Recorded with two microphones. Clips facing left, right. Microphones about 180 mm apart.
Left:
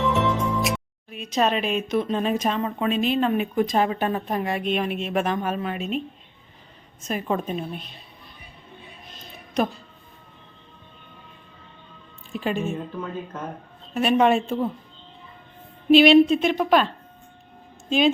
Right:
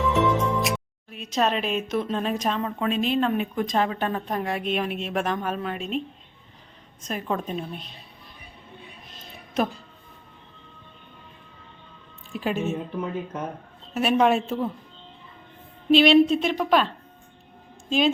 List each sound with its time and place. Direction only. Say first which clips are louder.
0.0 s speech: right 1 dB; centre (ahead or behind)
7.0 s a woman's voice: left 3 dB; 5° left (ahead or behind)
9.6 s a woman's voice: left 1 dB; 5° right (ahead or behind)
12.3 s a woman's voice: even; 5° right (ahead or behind)
12.7 s speech: right 2 dB; 20° right (ahead or behind)
13.9 s a woman's voice: left 1 dB; centre (ahead or behind)
15.9 s a woman's voice: left 3 dB; 5° left (ahead or behind)